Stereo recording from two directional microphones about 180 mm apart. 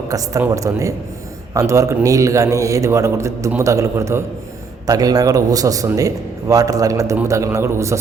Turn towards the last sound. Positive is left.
turn(degrees=-15)  # may be behind; listen again after turning